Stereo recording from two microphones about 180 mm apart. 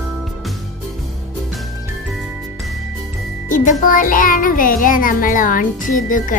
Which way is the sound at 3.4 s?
50° left (ahead or behind).